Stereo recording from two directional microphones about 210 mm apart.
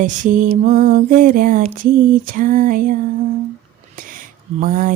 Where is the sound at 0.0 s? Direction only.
40° right (ahead or behind).